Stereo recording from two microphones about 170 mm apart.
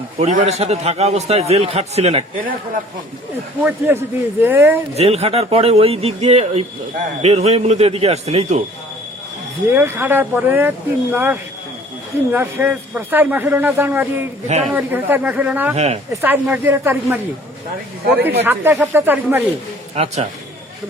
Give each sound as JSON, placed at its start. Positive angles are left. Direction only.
{"t": 0.2, "sound": "a man's voice", "side_deg": -40}
{"t": 3.6, "sound": "speech", "side_deg": -10}
{"t": 4.9, "sound": "a man's voice", "side_deg": -35}
{"t": 9.7, "sound": "speech", "side_deg": -10}
{"t": 14.4, "sound": "a man's voice", "side_deg": -40}
{"t": 14.7, "sound": "speech", "side_deg": -10}
{"t": 15.7, "sound": "a man's voice", "side_deg": -40}
{"t": 16.2, "sound": "speech", "side_deg": -10}
{"t": 18.4, "sound": "speech", "side_deg": -10}
{"t": 20.0, "sound": "a man's voice", "side_deg": -35}